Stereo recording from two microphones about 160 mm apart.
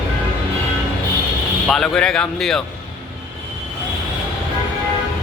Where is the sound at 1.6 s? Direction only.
5° left (ahead or behind).